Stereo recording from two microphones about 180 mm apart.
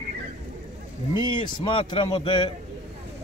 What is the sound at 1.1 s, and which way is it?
Speech, 25° left (ahead or behind).